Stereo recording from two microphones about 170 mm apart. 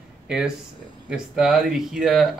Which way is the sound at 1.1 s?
5° right (ahead or behind).